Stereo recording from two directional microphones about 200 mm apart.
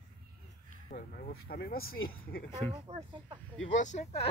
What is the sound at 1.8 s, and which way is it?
Speech, 90° left.